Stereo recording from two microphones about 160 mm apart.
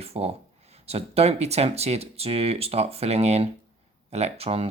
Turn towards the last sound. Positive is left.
turn(degrees=-40)  # may be behind; listen again after turning